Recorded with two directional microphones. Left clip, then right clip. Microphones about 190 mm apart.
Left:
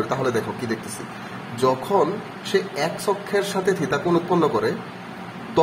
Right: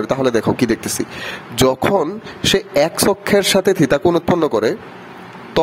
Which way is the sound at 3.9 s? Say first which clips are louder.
Right 6 dB; 60° right (ahead or behind).